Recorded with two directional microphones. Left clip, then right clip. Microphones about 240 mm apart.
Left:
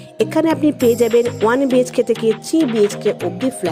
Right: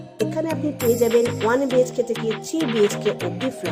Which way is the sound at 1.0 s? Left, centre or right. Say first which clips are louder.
Left 4 dB; left.